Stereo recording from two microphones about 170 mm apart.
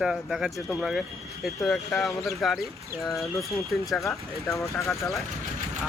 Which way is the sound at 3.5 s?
Centre (ahead or behind).